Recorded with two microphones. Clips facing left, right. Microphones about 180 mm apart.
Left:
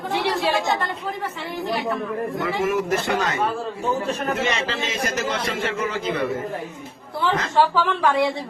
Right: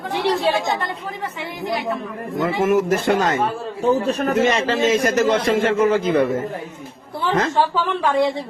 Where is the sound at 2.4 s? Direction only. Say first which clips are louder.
Right 7 dB; 50° right (ahead or behind).